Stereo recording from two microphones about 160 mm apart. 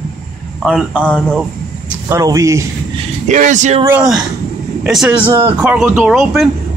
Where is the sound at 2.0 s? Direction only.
20° right (ahead or behind).